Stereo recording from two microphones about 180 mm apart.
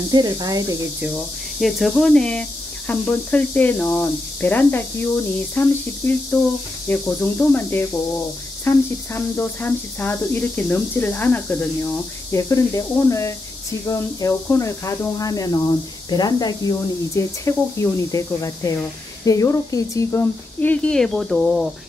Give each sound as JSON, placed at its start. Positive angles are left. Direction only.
{"t": 0.1, "sound": "speech", "side_deg": -20}
{"t": 1.0, "sound": "speech", "side_deg": -5}